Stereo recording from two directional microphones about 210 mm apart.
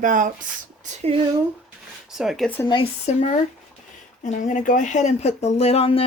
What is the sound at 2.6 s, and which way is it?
Speech, 25° left (ahead or behind).